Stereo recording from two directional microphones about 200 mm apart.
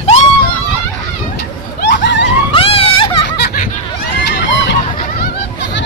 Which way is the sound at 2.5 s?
30° left (ahead or behind).